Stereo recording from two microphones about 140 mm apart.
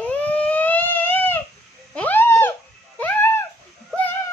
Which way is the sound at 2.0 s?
15° left (ahead or behind).